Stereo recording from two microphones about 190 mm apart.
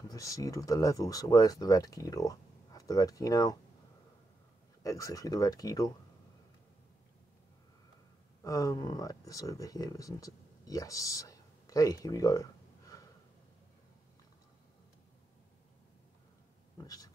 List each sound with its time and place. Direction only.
0.1 s speech: 20° left (ahead or behind)
4.8 s speech: 20° left (ahead or behind)
8.5 s speech: 20° left (ahead or behind)
16.8 s pig: 20° left (ahead or behind)